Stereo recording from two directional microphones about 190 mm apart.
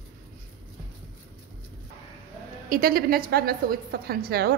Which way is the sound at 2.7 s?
50° right (ahead or behind).